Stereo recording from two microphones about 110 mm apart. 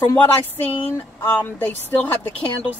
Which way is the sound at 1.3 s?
15° left (ahead or behind).